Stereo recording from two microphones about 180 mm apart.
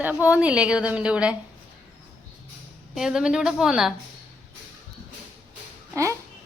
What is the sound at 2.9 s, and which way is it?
Speech, 5° right (ahead or behind).